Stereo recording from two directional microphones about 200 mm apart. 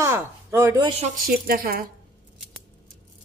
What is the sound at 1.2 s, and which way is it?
Speech, 45° right (ahead or behind).